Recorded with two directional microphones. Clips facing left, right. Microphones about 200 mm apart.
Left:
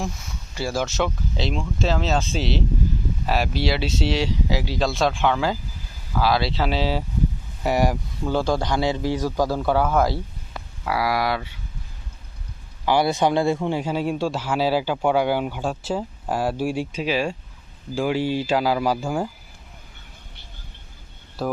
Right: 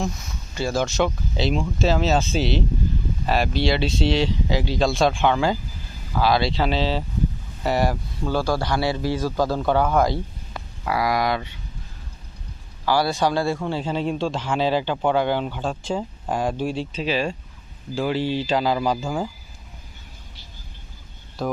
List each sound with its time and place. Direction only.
0.5 s speech: 10° left (ahead or behind)
12.8 s speech: 20° left (ahead or behind)
21.4 s speech: 5° left (ahead or behind)